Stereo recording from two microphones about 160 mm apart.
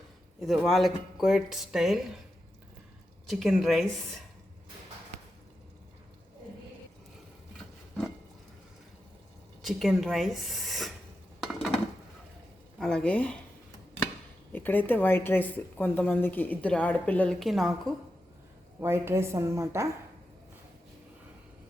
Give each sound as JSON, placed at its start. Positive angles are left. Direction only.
{"t": 0.3, "sound": "a woman's voice", "side_deg": 0}
{"t": 3.2, "sound": "a woman's voice", "side_deg": 0}
{"t": 9.6, "sound": "speech", "side_deg": 0}
{"t": 12.8, "sound": "a woman's voice", "side_deg": 5}
{"t": 14.5, "sound": "speech", "side_deg": 10}
{"t": 18.8, "sound": "a woman's voice", "side_deg": -15}